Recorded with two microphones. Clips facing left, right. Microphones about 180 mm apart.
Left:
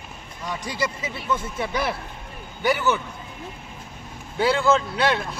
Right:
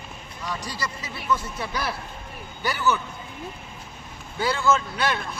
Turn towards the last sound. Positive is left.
turn(degrees=30)  # may be behind; listen again after turning